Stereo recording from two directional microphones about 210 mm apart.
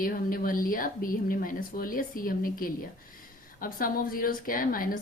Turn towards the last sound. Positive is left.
turn(degrees=45)  # may be behind; listen again after turning